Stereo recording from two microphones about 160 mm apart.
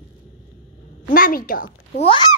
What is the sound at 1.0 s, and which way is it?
Speech, 60° left (ahead or behind).